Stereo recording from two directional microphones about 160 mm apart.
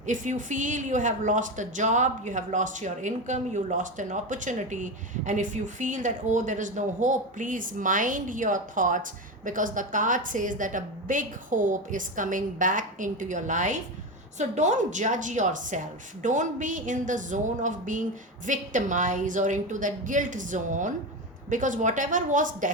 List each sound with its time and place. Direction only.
0.0 s a woman's voice: 50° right (ahead or behind)